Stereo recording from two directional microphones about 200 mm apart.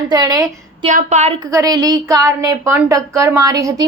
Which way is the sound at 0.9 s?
35° right (ahead or behind).